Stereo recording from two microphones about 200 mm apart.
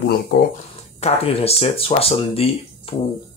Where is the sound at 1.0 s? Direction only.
30° left (ahead or behind).